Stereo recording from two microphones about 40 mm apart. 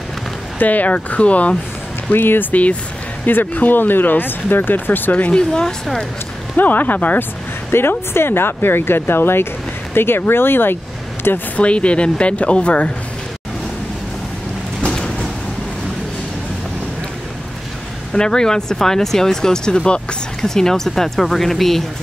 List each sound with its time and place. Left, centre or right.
0.6 s a woman's voice: left
2.1 s speech: left
2.5 s a woman's voice: left
3.3 s speech: left
5.3 s speech: centre
6.5 s speech: left
7.7 s speech: left
8.1 s speech: left
11.5 s a woman's voice: left
14.9 s a sound: centre
18.1 s speech: centre
20.4 s speech: centre